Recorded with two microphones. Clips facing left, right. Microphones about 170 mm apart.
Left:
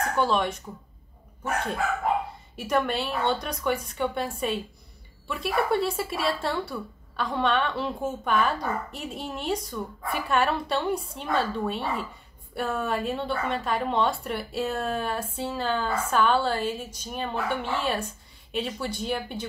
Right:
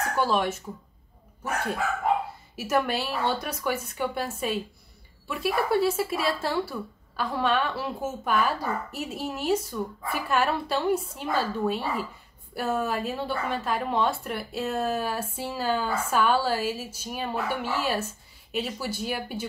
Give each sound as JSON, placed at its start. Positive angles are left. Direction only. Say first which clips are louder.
{"t": 0.1, "sound": "a woman's voice", "louder": "even", "side_deg": -5}
{"t": 2.5, "sound": "a woman's voice", "louder": "even", "side_deg": -5}